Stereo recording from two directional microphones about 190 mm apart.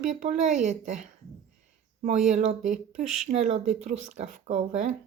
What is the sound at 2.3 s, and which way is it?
Speech, 35° right (ahead or behind).